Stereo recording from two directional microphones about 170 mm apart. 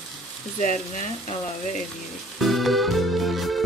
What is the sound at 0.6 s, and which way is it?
Speech, 45° left (ahead or behind).